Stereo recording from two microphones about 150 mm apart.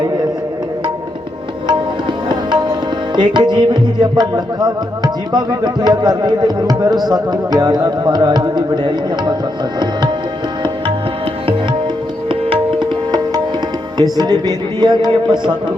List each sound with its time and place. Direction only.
2.3 s tabla: 30° right (ahead or behind)
3.2 s music: 30° right (ahead or behind)
12.3 s tabla: 35° right (ahead or behind)
14.0 s music: 25° right (ahead or behind)